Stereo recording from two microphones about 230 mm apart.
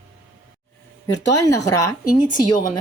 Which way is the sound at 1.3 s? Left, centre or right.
Centre.